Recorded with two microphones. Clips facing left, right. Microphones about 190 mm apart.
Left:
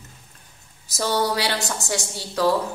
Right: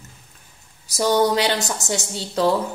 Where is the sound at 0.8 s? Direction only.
15° right (ahead or behind).